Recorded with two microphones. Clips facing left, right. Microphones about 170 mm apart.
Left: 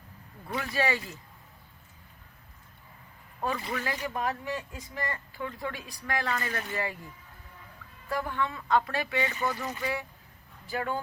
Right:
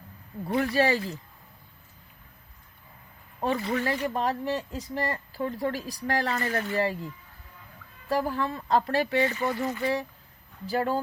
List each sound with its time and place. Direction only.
0.4 s speech: 35° right (ahead or behind)
3.4 s speech: 30° right (ahead or behind)
8.1 s speech: 35° right (ahead or behind)